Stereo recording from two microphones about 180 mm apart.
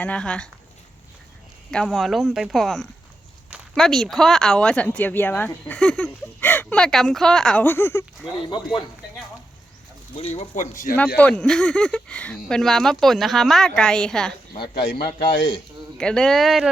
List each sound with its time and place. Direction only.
0.0 s speech: 5° left (ahead or behind)
1.7 s speech: 5° left (ahead or behind)
8.3 s speech: 25° left (ahead or behind)
10.2 s speech: 35° left (ahead or behind)
11.2 s speech: 5° left (ahead or behind)
14.9 s a man's voice: 65° left (ahead or behind)
16.0 s speech: 5° left (ahead or behind)